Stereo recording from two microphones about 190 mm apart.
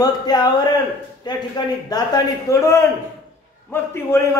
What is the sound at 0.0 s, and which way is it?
A man's voice, 20° left (ahead or behind).